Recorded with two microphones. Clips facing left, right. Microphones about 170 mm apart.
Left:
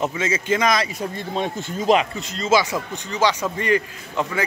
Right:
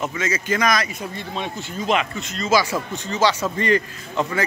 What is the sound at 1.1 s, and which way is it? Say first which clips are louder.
A man's voice: left 3 dB; 45° left (ahead or behind).